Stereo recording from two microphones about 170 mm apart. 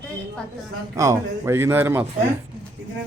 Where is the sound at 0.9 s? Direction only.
20° right (ahead or behind).